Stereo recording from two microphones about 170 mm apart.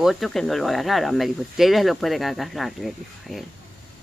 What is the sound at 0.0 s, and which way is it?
Speech, centre (ahead or behind).